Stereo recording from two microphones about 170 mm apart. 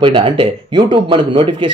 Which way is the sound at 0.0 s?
30° right (ahead or behind).